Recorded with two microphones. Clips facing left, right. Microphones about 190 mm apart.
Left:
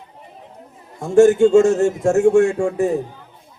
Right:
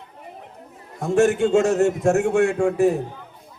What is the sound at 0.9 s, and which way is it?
A man's voice, 60° right (ahead or behind).